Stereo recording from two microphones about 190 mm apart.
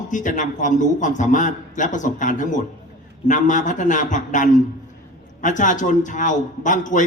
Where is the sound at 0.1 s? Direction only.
40° left (ahead or behind).